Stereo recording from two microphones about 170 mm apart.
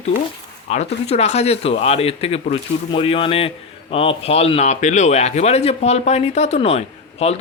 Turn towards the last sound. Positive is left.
turn(degrees=40)  # may be behind; listen again after turning